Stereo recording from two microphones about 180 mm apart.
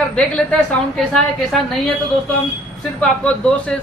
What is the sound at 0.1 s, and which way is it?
A woman's voice, 5° left (ahead or behind).